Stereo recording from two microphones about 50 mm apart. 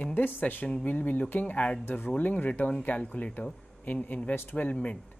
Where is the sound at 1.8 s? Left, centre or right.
Left.